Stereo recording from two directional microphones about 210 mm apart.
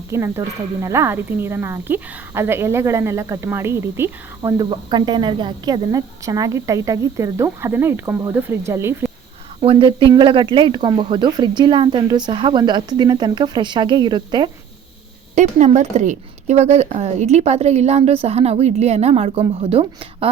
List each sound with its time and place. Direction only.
0.1 s speech: 15° right (ahead or behind)
9.6 s speech: 25° right (ahead or behind)
15.4 s a woman's voice: 35° right (ahead or behind)